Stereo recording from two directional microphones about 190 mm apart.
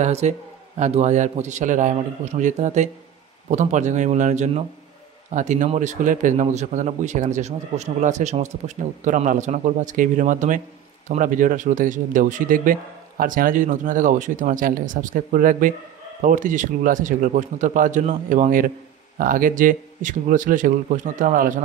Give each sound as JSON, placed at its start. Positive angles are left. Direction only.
{"t": 0.0, "sound": "a man's voice", "side_deg": -35}